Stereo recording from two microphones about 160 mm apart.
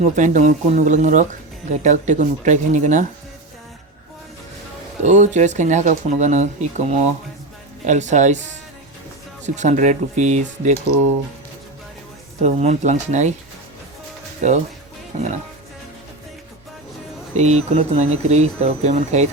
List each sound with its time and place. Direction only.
0.0 s speech: 50° right (ahead or behind)
5.0 s speech: 50° right (ahead or behind)
9.6 s speech: 50° right (ahead or behind)
12.4 s speech: 45° right (ahead or behind)
17.3 s speech: 45° right (ahead or behind)